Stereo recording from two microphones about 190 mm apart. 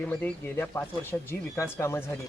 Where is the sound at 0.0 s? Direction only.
10° left (ahead or behind).